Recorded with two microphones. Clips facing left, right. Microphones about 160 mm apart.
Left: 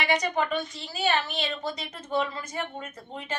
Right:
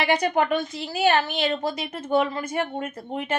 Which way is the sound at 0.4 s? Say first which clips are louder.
Right 5 dB; 70° right (ahead or behind).